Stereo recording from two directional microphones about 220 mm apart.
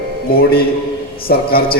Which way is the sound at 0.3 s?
45° left (ahead or behind).